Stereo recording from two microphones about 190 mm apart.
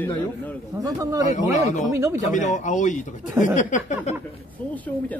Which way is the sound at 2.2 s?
40° left (ahead or behind).